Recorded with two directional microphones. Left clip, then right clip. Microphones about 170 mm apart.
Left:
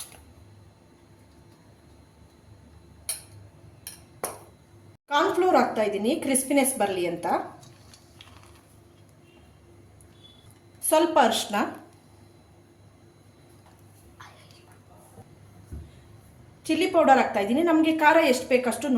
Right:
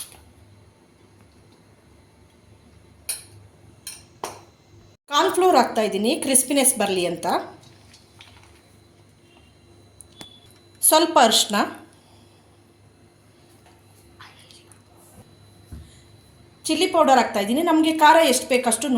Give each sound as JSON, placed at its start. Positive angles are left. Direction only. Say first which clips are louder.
{"t": 5.0, "sound": "speech", "louder": "right 4 dB", "side_deg": -40}
{"t": 10.8, "sound": "a woman's voice", "louder": "right 4 dB", "side_deg": -40}
{"t": 16.6, "sound": "speech", "louder": "right 2 dB", "side_deg": -45}